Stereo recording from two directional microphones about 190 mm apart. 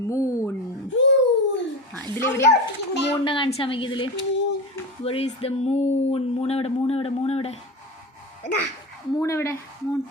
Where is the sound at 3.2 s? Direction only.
25° left (ahead or behind).